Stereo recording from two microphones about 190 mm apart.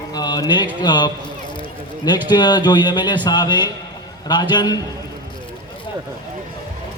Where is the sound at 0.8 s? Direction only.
25° left (ahead or behind).